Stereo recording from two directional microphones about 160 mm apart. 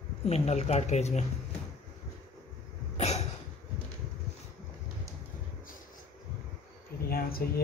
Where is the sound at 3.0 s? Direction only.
40° left (ahead or behind).